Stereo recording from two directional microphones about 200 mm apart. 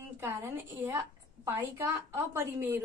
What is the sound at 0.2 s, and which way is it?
A woman's voice, 10° right (ahead or behind).